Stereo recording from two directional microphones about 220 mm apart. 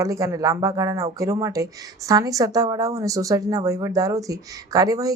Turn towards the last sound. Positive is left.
turn(degrees=-15)  # may be behind; listen again after turning